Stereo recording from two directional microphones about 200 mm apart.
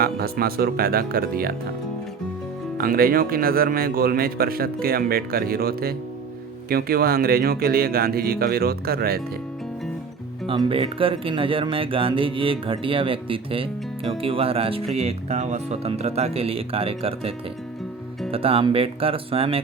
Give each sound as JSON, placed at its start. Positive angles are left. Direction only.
{"t": 0.0, "sound": "speech", "side_deg": -50}
{"t": 2.7, "sound": "speech", "side_deg": -45}
{"t": 10.4, "sound": "speech", "side_deg": -25}